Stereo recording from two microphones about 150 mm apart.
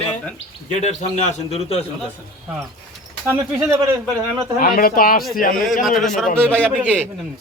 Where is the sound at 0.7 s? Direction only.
50° left (ahead or behind).